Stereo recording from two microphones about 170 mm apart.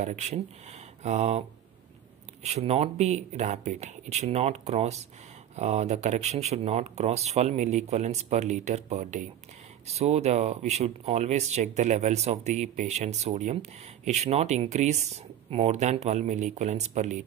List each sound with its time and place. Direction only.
0.0 s speech: 45° right (ahead or behind)
2.4 s speech: 40° right (ahead or behind)